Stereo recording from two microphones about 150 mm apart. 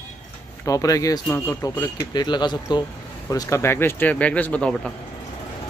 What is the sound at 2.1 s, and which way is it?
Speech, 30° left (ahead or behind).